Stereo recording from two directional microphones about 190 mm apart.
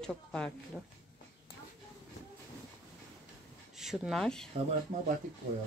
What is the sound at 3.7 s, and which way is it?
Speech, centre (ahead or behind).